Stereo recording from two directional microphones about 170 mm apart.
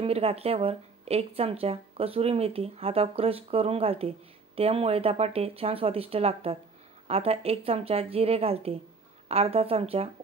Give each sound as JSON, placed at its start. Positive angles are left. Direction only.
{"t": 0.0, "sound": "speech", "side_deg": -35}